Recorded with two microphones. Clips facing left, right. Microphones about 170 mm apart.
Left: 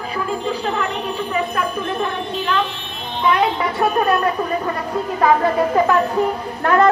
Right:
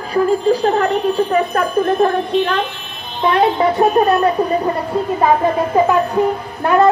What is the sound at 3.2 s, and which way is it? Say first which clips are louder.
Speech: right 4 dB; 35° right (ahead or behind).